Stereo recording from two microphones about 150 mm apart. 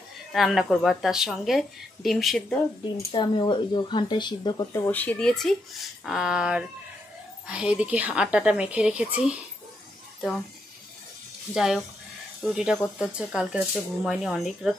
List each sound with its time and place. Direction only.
0.3 s speech: centre (ahead or behind)
3.0 s speech: 30° left (ahead or behind)
4.8 s a woman's voice: 10° left (ahead or behind); by 9.4 s 5° right (ahead or behind)
11.5 s speech: 5° right (ahead or behind)